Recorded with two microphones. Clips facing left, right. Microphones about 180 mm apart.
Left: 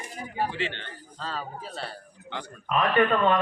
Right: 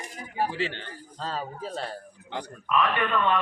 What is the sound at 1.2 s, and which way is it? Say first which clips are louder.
Speech: right 2 dB; 40° right (ahead or behind).